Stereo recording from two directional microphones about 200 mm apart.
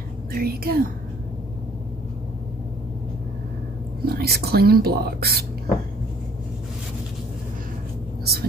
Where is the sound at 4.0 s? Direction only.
50° right (ahead or behind).